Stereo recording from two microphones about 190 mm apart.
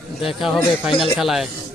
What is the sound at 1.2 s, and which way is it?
Speech, centre (ahead or behind).